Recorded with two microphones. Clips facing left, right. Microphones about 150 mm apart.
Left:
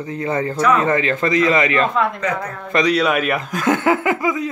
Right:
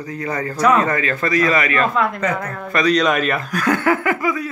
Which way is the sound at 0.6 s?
40° right (ahead or behind).